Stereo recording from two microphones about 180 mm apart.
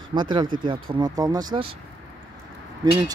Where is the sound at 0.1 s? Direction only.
25° right (ahead or behind).